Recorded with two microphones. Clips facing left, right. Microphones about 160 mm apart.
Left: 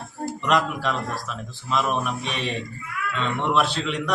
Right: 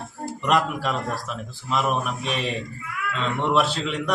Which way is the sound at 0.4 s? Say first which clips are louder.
Right 1 dB; 5° right (ahead or behind).